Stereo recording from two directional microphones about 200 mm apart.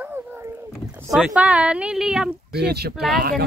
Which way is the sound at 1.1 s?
5° right (ahead or behind).